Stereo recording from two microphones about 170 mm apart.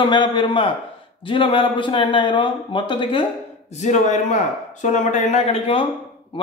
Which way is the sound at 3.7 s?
45° left (ahead or behind).